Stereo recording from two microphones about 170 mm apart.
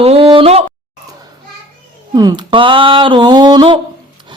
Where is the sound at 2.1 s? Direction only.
25° right (ahead or behind).